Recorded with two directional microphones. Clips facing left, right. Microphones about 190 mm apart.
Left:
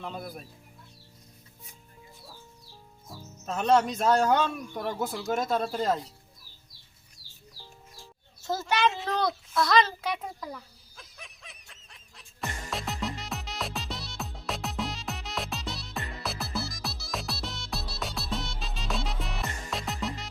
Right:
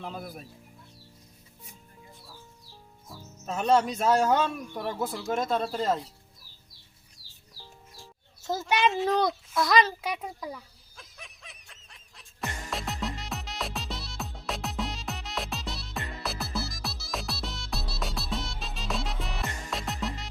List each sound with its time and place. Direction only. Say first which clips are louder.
0.0 s a man's voice: even; 5° right (ahead or behind)
3.4 s a man's voice: even; 5° right (ahead or behind)
8.9 s a man's voice: right 4 dB; centre (ahead or behind)
9.6 s a sound: even; 15° right (ahead or behind); by 20.3 s centre (ahead or behind)